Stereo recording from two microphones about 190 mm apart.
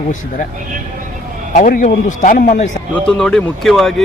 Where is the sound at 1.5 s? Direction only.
45° left (ahead or behind).